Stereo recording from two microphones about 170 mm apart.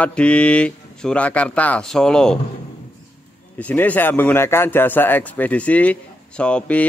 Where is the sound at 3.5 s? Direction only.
10° left (ahead or behind).